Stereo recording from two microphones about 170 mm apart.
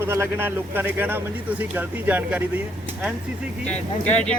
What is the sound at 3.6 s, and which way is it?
Speech, 5° left (ahead or behind).